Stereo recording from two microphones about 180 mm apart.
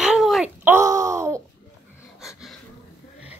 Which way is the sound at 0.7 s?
15° right (ahead or behind).